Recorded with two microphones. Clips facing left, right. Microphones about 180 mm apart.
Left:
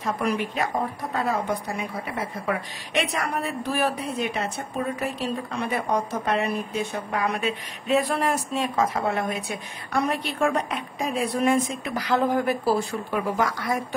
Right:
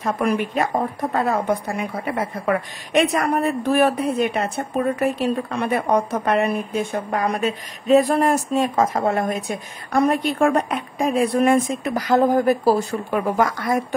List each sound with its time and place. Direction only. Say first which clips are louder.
0.0 s a woman's voice: right 4 dB; 55° right (ahead or behind)